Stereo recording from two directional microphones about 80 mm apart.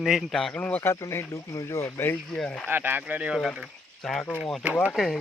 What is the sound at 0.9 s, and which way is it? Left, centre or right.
Speech, left.